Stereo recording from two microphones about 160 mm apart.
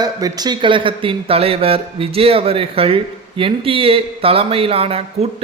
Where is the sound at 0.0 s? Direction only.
25° right (ahead or behind).